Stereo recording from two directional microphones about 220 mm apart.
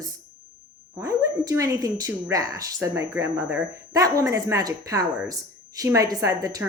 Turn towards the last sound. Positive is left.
turn(degrees=-15)  # may be behind; listen again after turning